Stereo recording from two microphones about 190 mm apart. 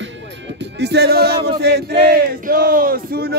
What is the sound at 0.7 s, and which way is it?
Speech, 60° right (ahead or behind).